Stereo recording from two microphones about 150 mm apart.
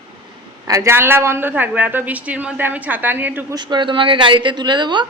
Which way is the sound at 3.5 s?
30° right (ahead or behind).